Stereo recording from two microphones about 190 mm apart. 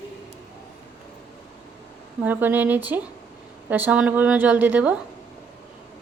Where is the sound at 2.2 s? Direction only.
10° right (ahead or behind).